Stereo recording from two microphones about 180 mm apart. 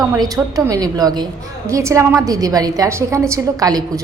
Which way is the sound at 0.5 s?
20° right (ahead or behind).